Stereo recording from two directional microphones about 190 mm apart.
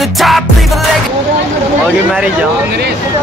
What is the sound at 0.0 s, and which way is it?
Music, centre (ahead or behind).